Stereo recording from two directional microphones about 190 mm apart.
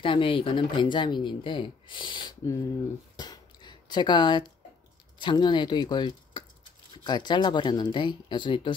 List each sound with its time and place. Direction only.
0.0 s speech: 25° left (ahead or behind)
3.2 s a sound: 20° left (ahead or behind)
5.2 s speech: 25° left (ahead or behind)